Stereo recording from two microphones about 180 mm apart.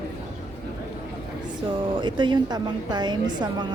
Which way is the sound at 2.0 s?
25° right (ahead or behind).